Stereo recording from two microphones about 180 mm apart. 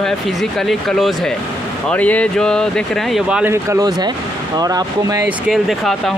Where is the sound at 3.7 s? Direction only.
20° right (ahead or behind).